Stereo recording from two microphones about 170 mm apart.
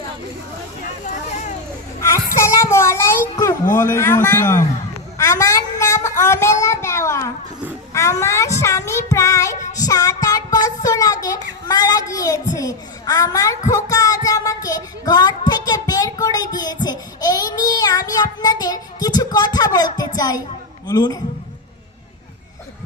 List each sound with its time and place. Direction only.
1.0 s a sound: 45° left (ahead or behind)
2.0 s child singing: 15° left (ahead or behind)
3.8 s speech: 15° left (ahead or behind)
5.1 s a sound: 20° left (ahead or behind)
7.9 s child singing: 20° left (ahead or behind)
10.8 s a child's voice: 20° left (ahead or behind)
13.7 s child singing: 20° left (ahead or behind)
20.1 s a child's voice: 20° left (ahead or behind)